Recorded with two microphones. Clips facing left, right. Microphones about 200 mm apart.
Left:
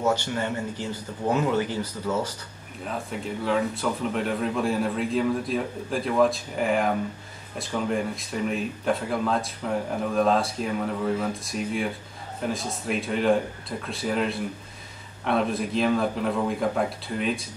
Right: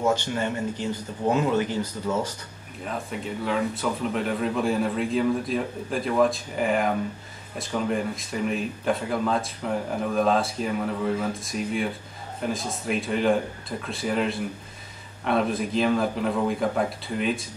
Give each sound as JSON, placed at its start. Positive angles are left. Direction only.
{"t": 0.3, "sound": "speech", "side_deg": -15}
{"t": 2.9, "sound": "speech", "side_deg": 0}